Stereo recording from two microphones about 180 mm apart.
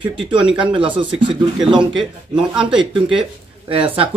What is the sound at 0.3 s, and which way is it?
Speech, 5° right (ahead or behind).